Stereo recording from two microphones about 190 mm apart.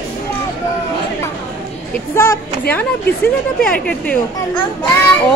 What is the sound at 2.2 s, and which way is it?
Speech, 15° left (ahead or behind).